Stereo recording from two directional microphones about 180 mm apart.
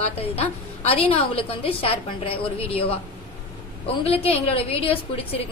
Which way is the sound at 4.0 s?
35° left (ahead or behind).